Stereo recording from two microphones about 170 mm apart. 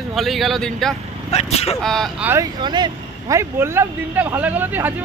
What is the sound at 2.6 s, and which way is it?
Speech, 25° right (ahead or behind).